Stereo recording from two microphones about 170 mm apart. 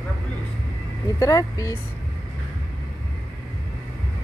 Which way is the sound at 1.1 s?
20° left (ahead or behind).